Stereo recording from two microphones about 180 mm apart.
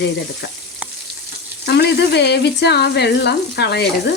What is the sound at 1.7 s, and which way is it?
Speech, 65° left (ahead or behind).